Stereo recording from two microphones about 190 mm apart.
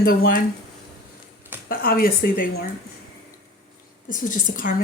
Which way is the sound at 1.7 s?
50° left (ahead or behind).